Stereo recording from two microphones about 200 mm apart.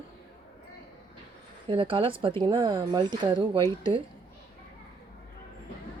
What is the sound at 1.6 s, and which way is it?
Speech, 25° right (ahead or behind).